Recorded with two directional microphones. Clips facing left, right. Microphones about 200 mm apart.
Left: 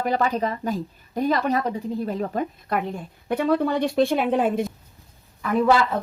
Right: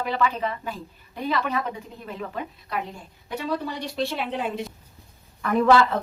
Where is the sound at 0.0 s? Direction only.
45° left (ahead or behind).